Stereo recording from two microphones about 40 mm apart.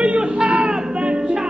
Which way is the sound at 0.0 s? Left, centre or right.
Right.